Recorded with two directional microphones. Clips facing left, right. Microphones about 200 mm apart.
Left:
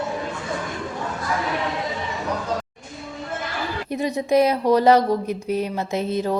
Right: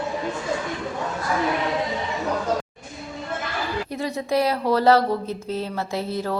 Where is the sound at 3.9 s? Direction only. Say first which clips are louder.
Left 7 dB; 20° left (ahead or behind).